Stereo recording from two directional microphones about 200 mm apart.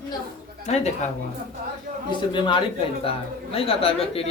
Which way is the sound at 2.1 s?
25° left (ahead or behind).